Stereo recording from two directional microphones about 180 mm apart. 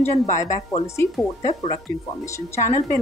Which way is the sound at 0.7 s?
35° left (ahead or behind).